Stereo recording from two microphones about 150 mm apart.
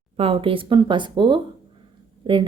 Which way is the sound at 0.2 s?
40° right (ahead or behind).